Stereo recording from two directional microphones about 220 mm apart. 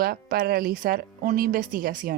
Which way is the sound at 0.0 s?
45° right (ahead or behind).